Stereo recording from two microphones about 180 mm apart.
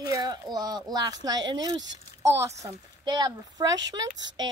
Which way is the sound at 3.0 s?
25° right (ahead or behind).